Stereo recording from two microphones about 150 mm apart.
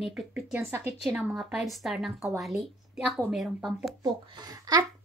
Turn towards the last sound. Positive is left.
turn(degrees=-25)  # may be behind; listen again after turning